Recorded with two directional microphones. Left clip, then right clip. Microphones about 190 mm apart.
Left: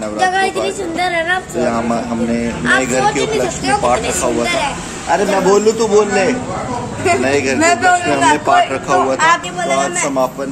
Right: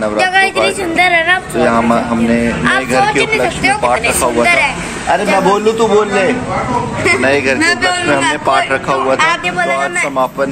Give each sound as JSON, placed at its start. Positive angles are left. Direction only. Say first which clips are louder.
{"t": 0.2, "sound": "a woman's voice", "louder": "right 3 dB", "side_deg": 25}
{"t": 1.6, "sound": "a man's voice", "louder": "right 5 dB", "side_deg": 0}
{"t": 7.6, "sound": "a man's voice", "louder": "even", "side_deg": 45}